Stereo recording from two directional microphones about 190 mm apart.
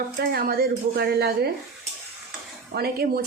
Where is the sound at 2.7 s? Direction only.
50° right (ahead or behind).